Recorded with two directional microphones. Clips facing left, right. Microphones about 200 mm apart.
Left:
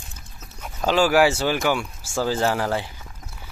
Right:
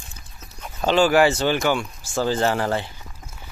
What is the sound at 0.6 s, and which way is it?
Speech, 5° left (ahead or behind).